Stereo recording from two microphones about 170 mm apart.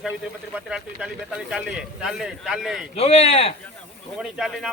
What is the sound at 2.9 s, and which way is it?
Speech, 35° left (ahead or behind).